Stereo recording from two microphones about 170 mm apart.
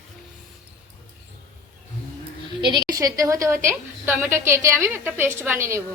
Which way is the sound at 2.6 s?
25° right (ahead or behind).